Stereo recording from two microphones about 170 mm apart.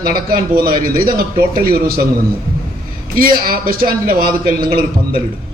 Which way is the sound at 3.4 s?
60° right (ahead or behind).